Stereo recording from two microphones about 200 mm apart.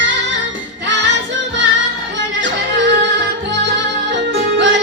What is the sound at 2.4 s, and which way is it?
Music, 65° right (ahead or behind).